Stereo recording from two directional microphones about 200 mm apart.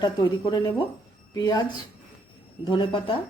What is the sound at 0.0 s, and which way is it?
Speech, 20° left (ahead or behind).